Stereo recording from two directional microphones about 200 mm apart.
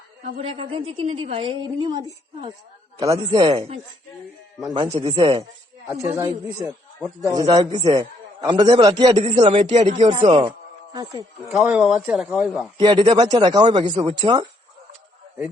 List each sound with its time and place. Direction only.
0.6 s a man's voice: 30° right (ahead or behind)
10.9 s a man's voice: 15° right (ahead or behind)
11.6 s speech: 5° right (ahead or behind)
12.7 s a man's voice: 25° right (ahead or behind)